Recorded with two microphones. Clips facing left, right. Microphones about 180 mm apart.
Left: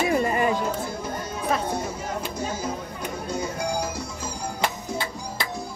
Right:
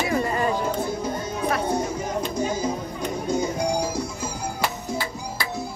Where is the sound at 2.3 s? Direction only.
10° right (ahead or behind).